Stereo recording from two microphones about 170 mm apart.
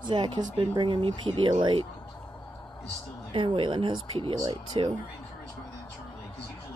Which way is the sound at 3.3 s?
30° right (ahead or behind).